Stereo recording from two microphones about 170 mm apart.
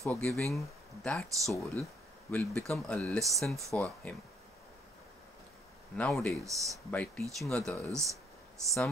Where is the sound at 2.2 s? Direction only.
5° left (ahead or behind).